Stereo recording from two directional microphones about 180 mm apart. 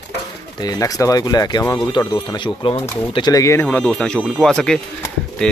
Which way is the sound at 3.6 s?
5° left (ahead or behind).